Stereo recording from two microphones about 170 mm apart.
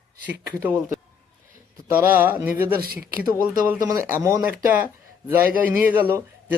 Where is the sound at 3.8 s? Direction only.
15° right (ahead or behind).